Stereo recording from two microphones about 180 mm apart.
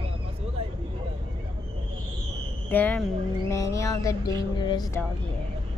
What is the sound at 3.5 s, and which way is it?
Speech, 20° left (ahead or behind).